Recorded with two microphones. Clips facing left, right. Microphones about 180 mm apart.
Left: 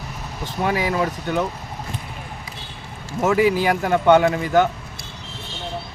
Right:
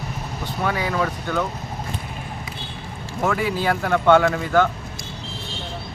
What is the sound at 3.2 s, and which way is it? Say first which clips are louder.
A man's voice: left 4 dB; 15° left (ahead or behind).